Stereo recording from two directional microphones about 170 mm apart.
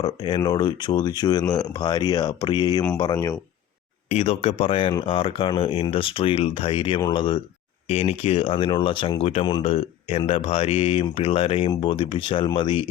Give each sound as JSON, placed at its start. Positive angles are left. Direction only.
{"t": 0.0, "sound": "speech", "side_deg": 25}
{"t": 4.1, "sound": "speech", "side_deg": 35}
{"t": 7.9, "sound": "speech", "side_deg": 35}